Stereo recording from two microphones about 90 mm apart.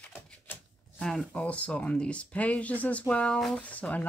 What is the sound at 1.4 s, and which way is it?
Speech, 15° left (ahead or behind).